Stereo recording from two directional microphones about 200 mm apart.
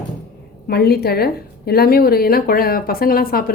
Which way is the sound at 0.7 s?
50° left (ahead or behind).